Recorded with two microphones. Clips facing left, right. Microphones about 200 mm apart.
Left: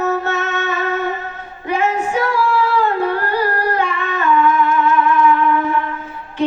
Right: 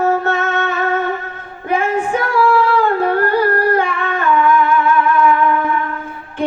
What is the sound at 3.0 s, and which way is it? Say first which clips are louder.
Humming: right 4 dB; 50° right (ahead or behind).